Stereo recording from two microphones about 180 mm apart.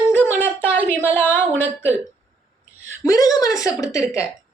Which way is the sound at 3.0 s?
20° left (ahead or behind).